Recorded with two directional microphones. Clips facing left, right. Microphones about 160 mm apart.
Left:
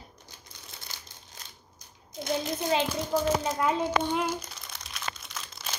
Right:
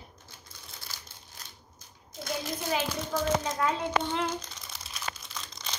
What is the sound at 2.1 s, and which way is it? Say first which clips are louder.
Speech: left 4 dB; 20° left (ahead or behind).